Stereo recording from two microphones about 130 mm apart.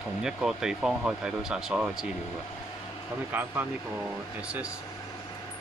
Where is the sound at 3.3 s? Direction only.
15° right (ahead or behind).